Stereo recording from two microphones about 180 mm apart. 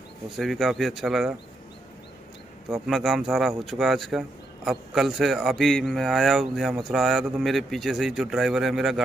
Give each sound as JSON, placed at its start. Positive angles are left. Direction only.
{"t": 0.4, "sound": "speech", "side_deg": 0}
{"t": 2.7, "sound": "speech", "side_deg": 0}